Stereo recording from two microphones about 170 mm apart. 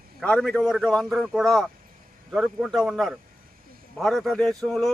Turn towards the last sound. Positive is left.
turn(degrees=5)  # may be behind; listen again after turning